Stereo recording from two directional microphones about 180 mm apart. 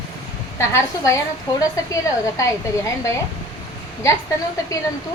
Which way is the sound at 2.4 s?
15° left (ahead or behind).